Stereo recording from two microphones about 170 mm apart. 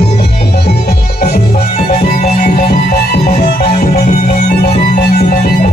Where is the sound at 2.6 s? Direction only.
70° left (ahead or behind).